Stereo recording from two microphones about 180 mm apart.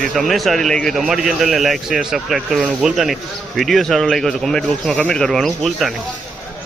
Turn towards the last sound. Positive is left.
turn(degrees=0)  # may be behind; listen again after turning